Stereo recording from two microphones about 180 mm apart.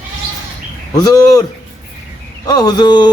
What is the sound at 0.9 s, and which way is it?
Speech, 20° left (ahead or behind).